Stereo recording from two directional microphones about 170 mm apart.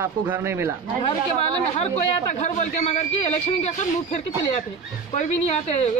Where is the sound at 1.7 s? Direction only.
40° left (ahead or behind).